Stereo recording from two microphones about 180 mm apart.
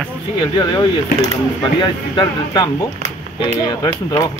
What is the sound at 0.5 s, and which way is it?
Speech, 25° left (ahead or behind).